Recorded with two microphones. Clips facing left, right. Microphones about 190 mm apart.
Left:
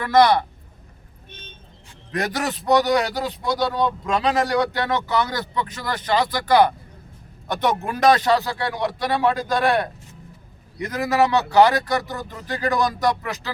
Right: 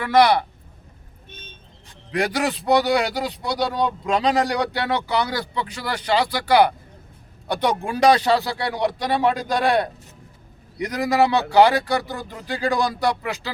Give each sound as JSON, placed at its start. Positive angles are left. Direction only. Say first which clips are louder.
{"t": 0.0, "sound": "speech", "louder": "even", "side_deg": -10}
{"t": 2.1, "sound": "speech", "louder": "right 2 dB", "side_deg": -10}